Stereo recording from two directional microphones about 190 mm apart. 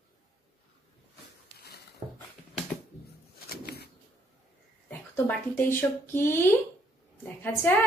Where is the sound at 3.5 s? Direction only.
55° left (ahead or behind).